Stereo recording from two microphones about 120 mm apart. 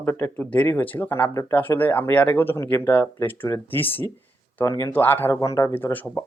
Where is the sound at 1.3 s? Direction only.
30° left (ahead or behind).